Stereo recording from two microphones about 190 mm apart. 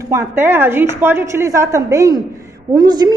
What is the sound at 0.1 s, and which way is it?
A woman's voice, 10° right (ahead or behind).